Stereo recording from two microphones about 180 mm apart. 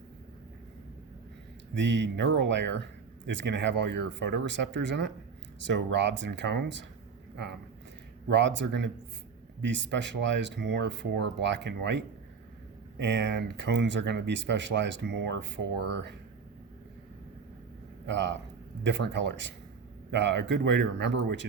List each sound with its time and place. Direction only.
1.7 s speech: 80° right
8.3 s speech: 80° right
18.0 s speech: 75° right (ahead or behind)